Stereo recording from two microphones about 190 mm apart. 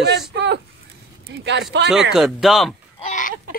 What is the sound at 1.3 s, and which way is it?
Speech, 65° right (ahead or behind).